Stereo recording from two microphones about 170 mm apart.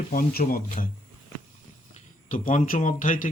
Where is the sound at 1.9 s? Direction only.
50° left (ahead or behind).